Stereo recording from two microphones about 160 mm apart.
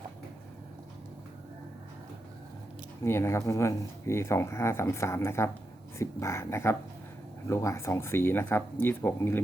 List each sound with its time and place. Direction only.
3.0 s speech: 15° left (ahead or behind)